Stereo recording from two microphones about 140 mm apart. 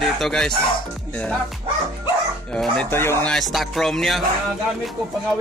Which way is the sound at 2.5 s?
5° left (ahead or behind).